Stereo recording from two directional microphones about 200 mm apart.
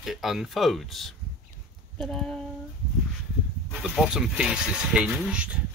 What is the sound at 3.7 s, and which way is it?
Speech, centre (ahead or behind).